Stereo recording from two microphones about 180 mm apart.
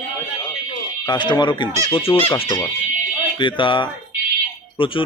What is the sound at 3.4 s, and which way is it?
Speech, 25° left (ahead or behind).